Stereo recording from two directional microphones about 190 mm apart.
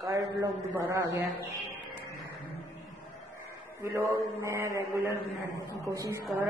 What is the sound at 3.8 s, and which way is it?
A man's voice, 15° right (ahead or behind).